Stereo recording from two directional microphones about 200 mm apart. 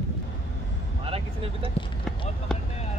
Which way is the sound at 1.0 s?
30° right (ahead or behind).